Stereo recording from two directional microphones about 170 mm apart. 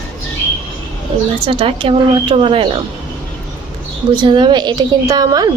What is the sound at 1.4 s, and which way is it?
Speech, 30° right (ahead or behind).